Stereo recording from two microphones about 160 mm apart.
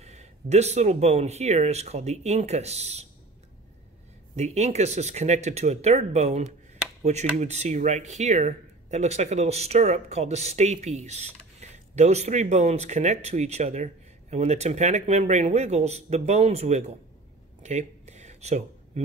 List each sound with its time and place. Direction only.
0.0 s speech: 45° right (ahead or behind)
4.4 s speech: 45° right (ahead or behind)
17.6 s a sound: 45° right (ahead or behind)